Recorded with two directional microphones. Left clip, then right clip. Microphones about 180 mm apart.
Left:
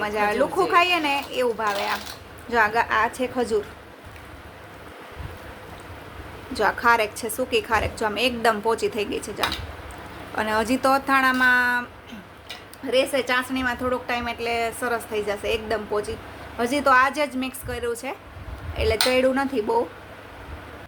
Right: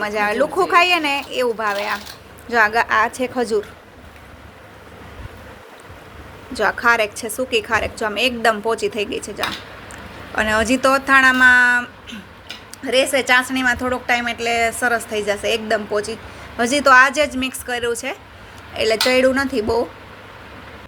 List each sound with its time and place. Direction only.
0.0 s a woman's voice: 15° right (ahead or behind)
6.5 s a woman's voice: 5° right (ahead or behind)